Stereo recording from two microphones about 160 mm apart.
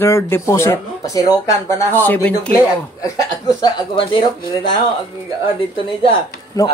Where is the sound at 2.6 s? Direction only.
20° left (ahead or behind).